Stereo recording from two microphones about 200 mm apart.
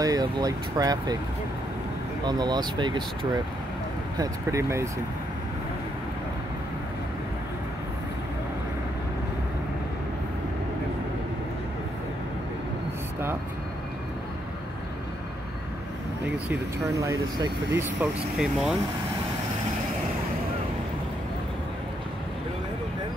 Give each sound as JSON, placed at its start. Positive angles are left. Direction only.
{"t": 0.0, "sound": "speech", "side_deg": -20}
{"t": 2.2, "sound": "speech", "side_deg": -20}
{"t": 4.2, "sound": "speech", "side_deg": -15}
{"t": 16.3, "sound": "a sound", "side_deg": -60}
{"t": 16.9, "sound": "speech", "side_deg": -15}